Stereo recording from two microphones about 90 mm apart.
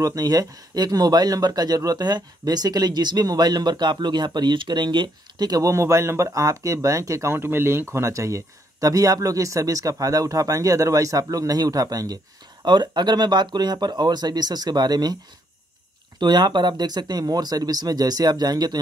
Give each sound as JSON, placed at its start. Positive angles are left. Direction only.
{"t": 0.0, "sound": "speech", "side_deg": -45}
{"t": 5.7, "sound": "speech", "side_deg": -35}
{"t": 12.6, "sound": "speech", "side_deg": -55}
{"t": 16.2, "sound": "speech", "side_deg": -55}